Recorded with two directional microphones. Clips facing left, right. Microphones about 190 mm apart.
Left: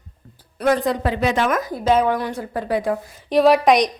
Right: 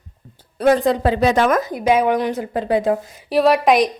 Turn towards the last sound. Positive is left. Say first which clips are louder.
# even
turn(degrees=0)  # may be behind; listen again after turning